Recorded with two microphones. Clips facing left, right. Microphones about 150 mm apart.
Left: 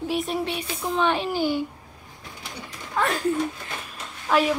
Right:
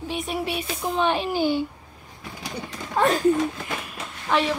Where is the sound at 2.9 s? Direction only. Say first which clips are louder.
Right 4 dB; 20° right (ahead or behind).